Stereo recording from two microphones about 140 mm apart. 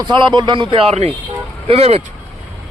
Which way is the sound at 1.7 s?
45° right (ahead or behind).